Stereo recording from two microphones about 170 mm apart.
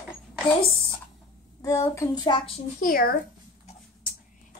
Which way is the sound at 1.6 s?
20° left (ahead or behind).